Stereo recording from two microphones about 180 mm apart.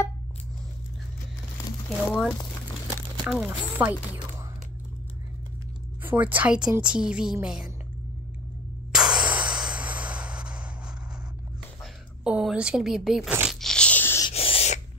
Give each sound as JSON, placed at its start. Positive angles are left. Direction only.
{"t": 1.9, "sound": "speech", "side_deg": 5}
{"t": 3.3, "sound": "speech", "side_deg": -5}
{"t": 6.0, "sound": "a woman's voice", "side_deg": -10}
{"t": 8.9, "sound": "a sound", "side_deg": -5}
{"t": 11.8, "sound": "speech", "side_deg": -5}
{"t": 13.6, "sound": "biting", "side_deg": 5}
{"t": 14.2, "sound": "owl", "side_deg": 30}